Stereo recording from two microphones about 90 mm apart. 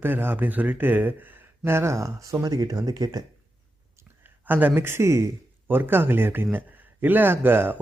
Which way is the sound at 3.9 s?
20° right (ahead or behind).